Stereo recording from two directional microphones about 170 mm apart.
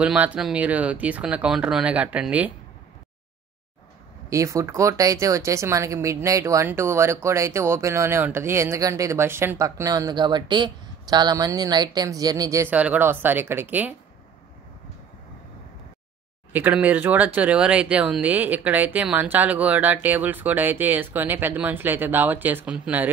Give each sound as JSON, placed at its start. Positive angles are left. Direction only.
{"t": 0.0, "sound": "speech", "side_deg": -5}
{"t": 4.3, "sound": "speech", "side_deg": -20}
{"t": 16.5, "sound": "speech", "side_deg": -10}